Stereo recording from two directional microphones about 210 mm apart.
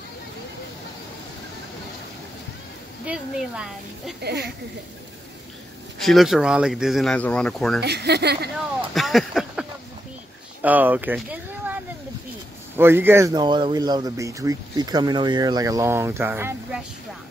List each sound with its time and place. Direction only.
3.1 s speech: 5° right (ahead or behind)
4.2 s speech: 50° right (ahead or behind)
5.9 s speech: centre (ahead or behind)
7.8 s speech: 50° right (ahead or behind)
8.9 s a sound: centre (ahead or behind)
10.6 s speech: 10° right (ahead or behind)